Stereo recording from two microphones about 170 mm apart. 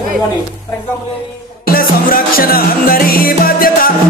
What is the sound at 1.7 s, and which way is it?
Music, 60° left (ahead or behind).